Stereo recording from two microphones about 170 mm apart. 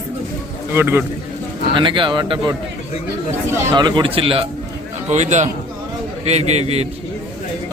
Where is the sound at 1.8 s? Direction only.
30° right (ahead or behind).